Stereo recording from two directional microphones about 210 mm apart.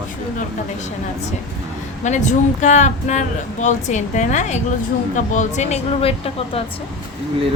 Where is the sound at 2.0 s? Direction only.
35° left (ahead or behind).